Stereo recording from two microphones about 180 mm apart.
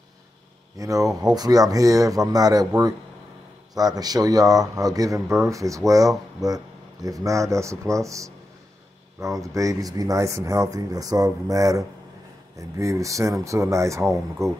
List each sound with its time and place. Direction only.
0.7 s speech: 20° right (ahead or behind)
3.7 s speech: 20° right (ahead or behind)